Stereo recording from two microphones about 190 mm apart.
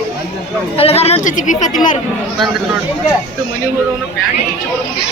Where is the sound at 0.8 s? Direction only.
30° left (ahead or behind).